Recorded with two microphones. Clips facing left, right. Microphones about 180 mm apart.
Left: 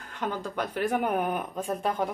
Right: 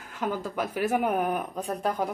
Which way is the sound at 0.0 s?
5° right (ahead or behind).